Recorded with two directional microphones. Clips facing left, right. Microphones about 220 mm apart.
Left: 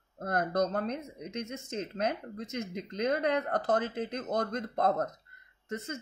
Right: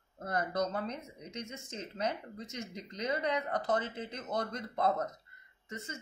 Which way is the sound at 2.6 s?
55° left (ahead or behind).